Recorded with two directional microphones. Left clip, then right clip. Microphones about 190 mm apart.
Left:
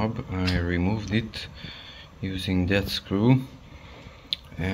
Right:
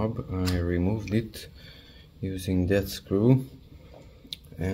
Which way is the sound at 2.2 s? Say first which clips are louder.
Left 1 dB; 20° right (ahead or behind).